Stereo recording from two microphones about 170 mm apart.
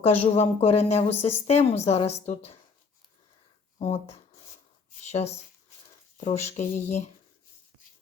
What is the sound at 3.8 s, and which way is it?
Speech, 35° left (ahead or behind).